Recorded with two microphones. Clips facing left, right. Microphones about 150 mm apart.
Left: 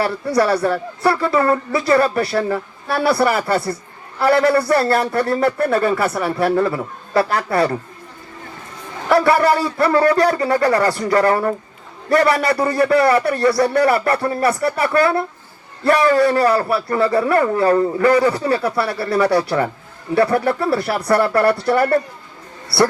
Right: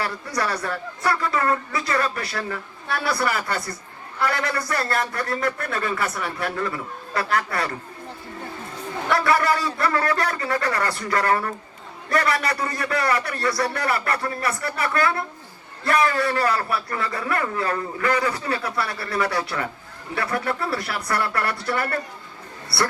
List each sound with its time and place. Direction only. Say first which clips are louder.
0.0 s a man's voice: left 9 dB; 30° left (ahead or behind)
9.0 s a man's voice: left 7 dB; 30° left (ahead or behind)